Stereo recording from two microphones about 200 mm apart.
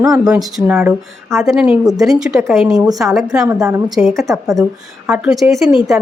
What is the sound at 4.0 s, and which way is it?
Speech, centre (ahead or behind).